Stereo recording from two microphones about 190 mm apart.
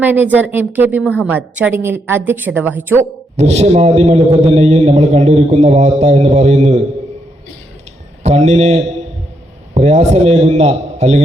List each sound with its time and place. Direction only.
0.0 s a woman's voice: 10° right (ahead or behind)
3.0 s a man's voice: 35° right (ahead or behind)
8.2 s a man's voice: 35° right (ahead or behind)